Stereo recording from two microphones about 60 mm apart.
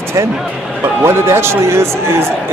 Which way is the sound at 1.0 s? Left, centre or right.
Right.